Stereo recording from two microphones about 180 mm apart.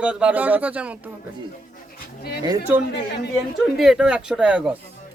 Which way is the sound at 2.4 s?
20° right (ahead or behind).